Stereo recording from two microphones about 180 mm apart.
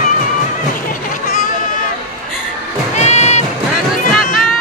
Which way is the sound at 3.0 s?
40° left (ahead or behind).